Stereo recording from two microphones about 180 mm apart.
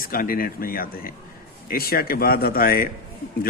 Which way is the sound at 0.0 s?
55° left (ahead or behind).